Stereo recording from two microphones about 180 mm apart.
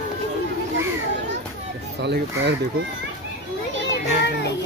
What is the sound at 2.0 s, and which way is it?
Speech, 70° right (ahead or behind).